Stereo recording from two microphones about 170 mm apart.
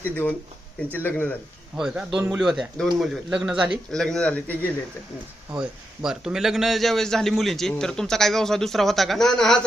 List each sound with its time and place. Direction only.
0.0 s speech: 10° left (ahead or behind)
1.7 s a man's voice: 5° right (ahead or behind)
5.5 s a man's voice: 5° right (ahead or behind)